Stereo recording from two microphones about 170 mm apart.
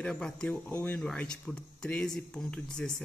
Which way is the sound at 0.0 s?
5° left (ahead or behind).